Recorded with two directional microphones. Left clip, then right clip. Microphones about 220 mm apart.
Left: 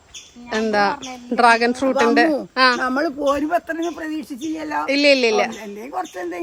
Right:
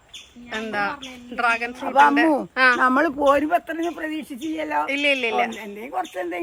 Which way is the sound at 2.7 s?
45° right (ahead or behind).